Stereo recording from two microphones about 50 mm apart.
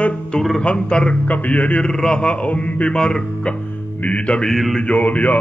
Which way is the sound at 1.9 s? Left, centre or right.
Centre.